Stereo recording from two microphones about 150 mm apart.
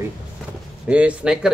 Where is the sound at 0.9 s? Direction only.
10° right (ahead or behind).